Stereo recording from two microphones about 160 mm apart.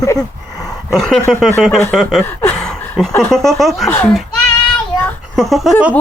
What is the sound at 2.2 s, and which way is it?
Speech, 15° left (ahead or behind).